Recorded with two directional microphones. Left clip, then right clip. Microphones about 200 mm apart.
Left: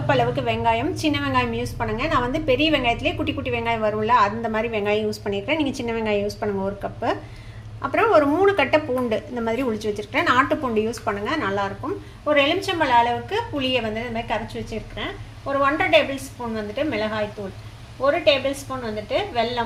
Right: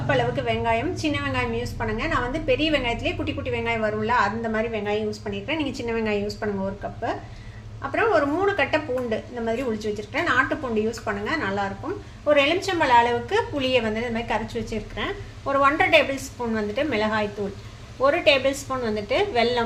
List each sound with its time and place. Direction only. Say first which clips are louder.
0.1 s a woman's voice: left 2 dB; 20° left (ahead or behind)
7.8 s a woman's voice: left 4 dB; 25° left (ahead or behind)
12.3 s a woman's voice: even; 5° left (ahead or behind); by 19.6 s 15° right (ahead or behind)